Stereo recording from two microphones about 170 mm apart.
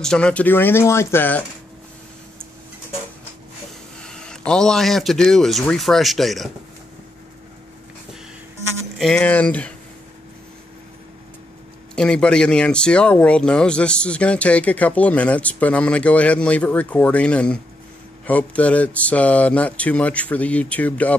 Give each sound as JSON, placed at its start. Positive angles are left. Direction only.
{"t": 0.0, "sound": "speech", "side_deg": 5}
{"t": 4.0, "sound": "a sound", "side_deg": 5}
{"t": 4.5, "sound": "speech", "side_deg": 5}
{"t": 8.9, "sound": "speech", "side_deg": 5}
{"t": 11.9, "sound": "speech", "side_deg": 5}